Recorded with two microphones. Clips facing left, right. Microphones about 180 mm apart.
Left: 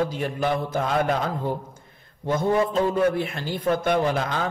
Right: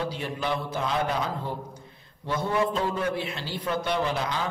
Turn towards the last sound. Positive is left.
turn(degrees=50)  # may be behind; listen again after turning